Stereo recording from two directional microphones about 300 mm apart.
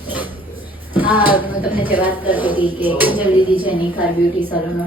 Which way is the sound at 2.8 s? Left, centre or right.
Centre.